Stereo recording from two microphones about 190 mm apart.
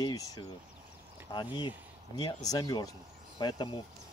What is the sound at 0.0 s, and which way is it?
Speech, 20° left (ahead or behind).